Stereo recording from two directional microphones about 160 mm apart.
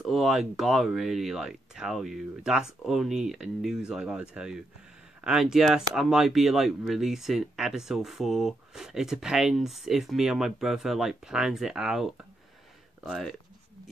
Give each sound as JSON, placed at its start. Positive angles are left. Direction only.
{"t": 0.0, "sound": "speech", "side_deg": 0}